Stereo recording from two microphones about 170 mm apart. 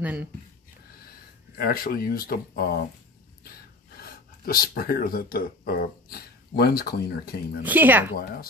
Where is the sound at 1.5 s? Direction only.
60° left (ahead or behind).